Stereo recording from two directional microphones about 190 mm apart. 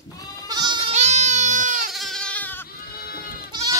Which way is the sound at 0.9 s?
35° right (ahead or behind).